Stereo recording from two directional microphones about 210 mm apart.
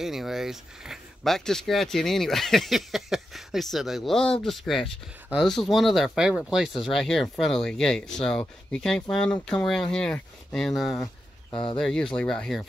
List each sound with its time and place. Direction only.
0.0 s speech: centre (ahead or behind)
11.5 s speech: 25° left (ahead or behind)
11.8 s speech: 5° left (ahead or behind)